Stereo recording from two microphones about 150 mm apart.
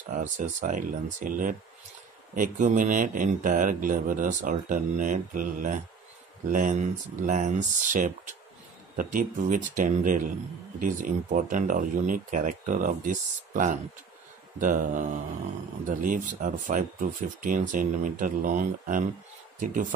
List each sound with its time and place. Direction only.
0.1 s speech: 55° right (ahead or behind)